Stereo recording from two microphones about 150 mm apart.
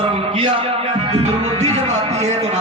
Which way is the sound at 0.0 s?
40° right (ahead or behind).